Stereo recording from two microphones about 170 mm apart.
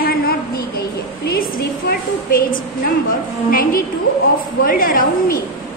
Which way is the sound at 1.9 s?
60° left (ahead or behind).